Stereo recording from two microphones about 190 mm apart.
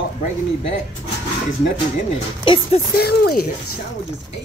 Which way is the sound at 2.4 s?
25° left (ahead or behind).